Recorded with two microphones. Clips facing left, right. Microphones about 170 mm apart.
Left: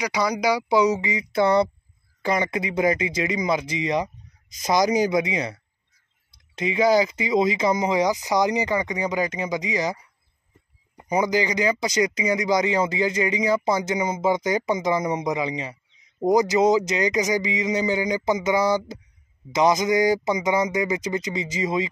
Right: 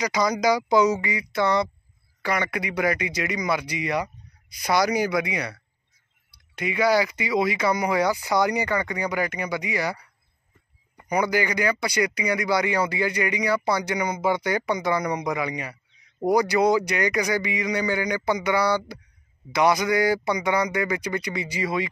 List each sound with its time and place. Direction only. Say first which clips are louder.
0.0 s speech: right 1 dB; 10° left (ahead or behind)
11.0 s speech: left 1 dB; 20° left (ahead or behind)
19.5 s speech: left 1 dB; 20° left (ahead or behind)